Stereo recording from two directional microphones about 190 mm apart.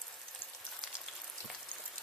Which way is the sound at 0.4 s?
30° left (ahead or behind).